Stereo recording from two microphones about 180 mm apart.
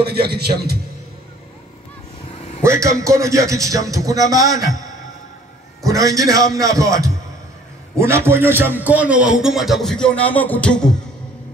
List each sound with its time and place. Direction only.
0.0 s a man's voice: 65° right (ahead or behind)
2.6 s a man's voice: 15° right (ahead or behind)
5.8 s a man's voice: 20° right (ahead or behind); by 10.9 s 5° left (ahead or behind)